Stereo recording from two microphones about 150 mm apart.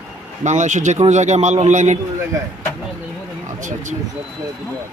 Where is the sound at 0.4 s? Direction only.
55° right (ahead or behind).